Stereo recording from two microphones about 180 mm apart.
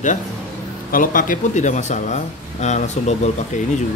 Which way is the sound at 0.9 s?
50° left (ahead or behind).